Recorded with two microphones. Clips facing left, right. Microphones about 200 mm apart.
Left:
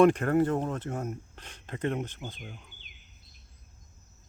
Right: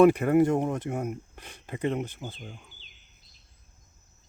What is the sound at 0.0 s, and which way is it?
Speech, 10° right (ahead or behind).